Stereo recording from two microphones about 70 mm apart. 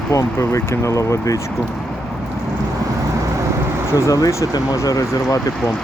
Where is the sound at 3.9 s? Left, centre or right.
Left.